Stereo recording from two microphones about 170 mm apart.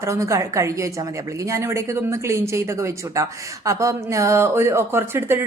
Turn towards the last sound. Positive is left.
turn(degrees=-15)  # may be behind; listen again after turning